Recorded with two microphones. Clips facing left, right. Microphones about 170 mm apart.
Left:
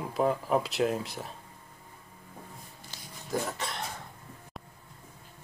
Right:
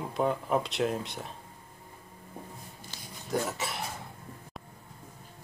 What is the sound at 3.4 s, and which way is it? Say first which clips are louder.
Speech: right 1 dB; 5° right (ahead or behind).